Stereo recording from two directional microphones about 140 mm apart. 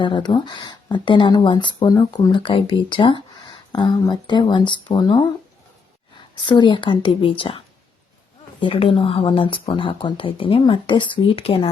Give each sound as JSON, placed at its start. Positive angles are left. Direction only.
{"t": 0.0, "sound": "a woman's voice", "side_deg": 35}
{"t": 6.4, "sound": "a woman's voice", "side_deg": 35}
{"t": 8.6, "sound": "a woman's voice", "side_deg": 40}